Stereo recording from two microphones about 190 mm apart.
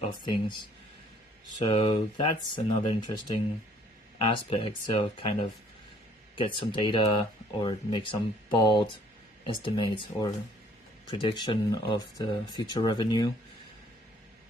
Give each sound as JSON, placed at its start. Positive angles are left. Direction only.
{"t": 0.0, "sound": "speech", "side_deg": 25}
{"t": 1.6, "sound": "speech", "side_deg": 30}
{"t": 9.9, "sound": "speech", "side_deg": 20}